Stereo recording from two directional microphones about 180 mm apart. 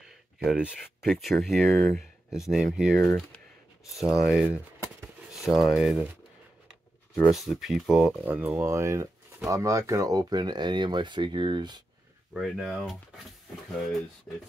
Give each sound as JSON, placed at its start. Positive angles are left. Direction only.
{"t": 0.0, "sound": "speech", "side_deg": -5}
{"t": 7.2, "sound": "speech", "side_deg": 0}
{"t": 12.4, "sound": "speech", "side_deg": 0}